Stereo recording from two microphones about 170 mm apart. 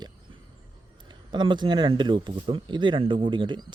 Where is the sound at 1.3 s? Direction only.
25° right (ahead or behind).